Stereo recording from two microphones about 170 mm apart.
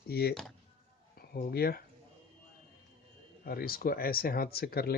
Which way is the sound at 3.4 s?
60° left (ahead or behind).